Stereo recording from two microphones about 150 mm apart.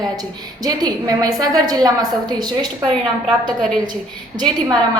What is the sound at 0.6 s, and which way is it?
A woman's voice, 25° right (ahead or behind).